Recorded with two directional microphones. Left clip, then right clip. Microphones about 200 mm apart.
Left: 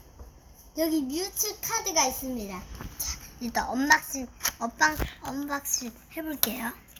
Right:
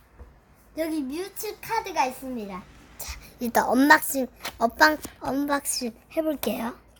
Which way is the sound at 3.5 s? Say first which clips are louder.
Right 5 dB; 65° right (ahead or behind).